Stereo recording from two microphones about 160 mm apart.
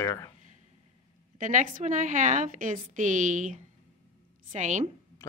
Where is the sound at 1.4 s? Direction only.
55° right (ahead or behind).